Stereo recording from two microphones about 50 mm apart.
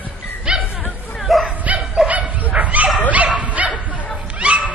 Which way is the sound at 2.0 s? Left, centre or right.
Right.